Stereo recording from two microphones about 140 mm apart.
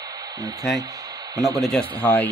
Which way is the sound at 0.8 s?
25° right (ahead or behind).